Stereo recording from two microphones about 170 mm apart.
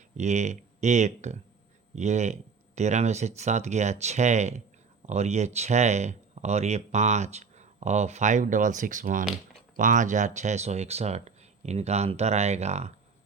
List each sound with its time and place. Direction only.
0.2 s speech: 45° right (ahead or behind)